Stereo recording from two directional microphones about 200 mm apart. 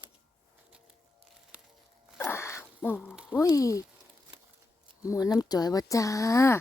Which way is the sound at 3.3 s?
15° left (ahead or behind).